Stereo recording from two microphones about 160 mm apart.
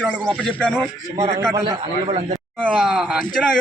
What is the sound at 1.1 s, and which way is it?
Speech, 45° right (ahead or behind).